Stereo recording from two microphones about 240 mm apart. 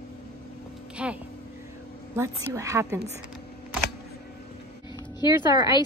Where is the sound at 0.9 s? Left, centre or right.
Centre.